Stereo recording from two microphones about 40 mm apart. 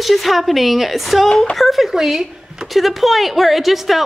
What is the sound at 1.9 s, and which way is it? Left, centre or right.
Speech, centre.